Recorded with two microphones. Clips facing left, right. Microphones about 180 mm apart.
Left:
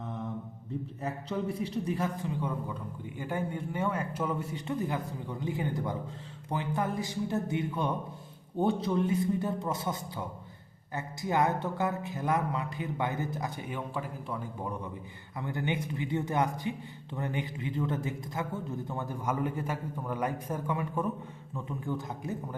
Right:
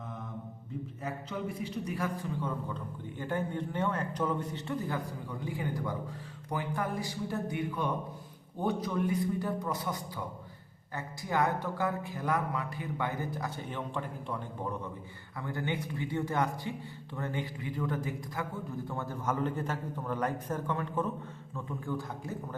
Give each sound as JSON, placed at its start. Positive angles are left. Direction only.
{"t": 1.3, "sound": "a man's voice", "side_deg": 35}
{"t": 2.0, "sound": "a man's voice", "side_deg": 20}
{"t": 15.4, "sound": "a man's voice", "side_deg": 20}